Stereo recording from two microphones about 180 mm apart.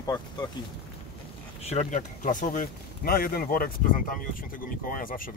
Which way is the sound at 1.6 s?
40° left (ahead or behind).